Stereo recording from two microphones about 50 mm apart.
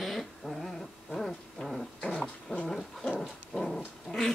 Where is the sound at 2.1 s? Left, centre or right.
Centre.